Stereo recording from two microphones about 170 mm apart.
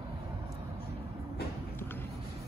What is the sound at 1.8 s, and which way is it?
Vehicle, 10° left (ahead or behind).